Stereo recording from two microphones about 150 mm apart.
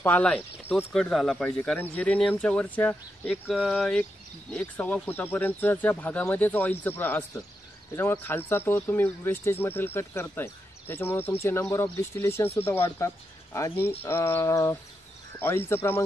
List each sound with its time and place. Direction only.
0.0 s speech: 10° left (ahead or behind)